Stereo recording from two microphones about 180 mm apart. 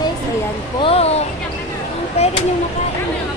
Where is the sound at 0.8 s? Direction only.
35° left (ahead or behind).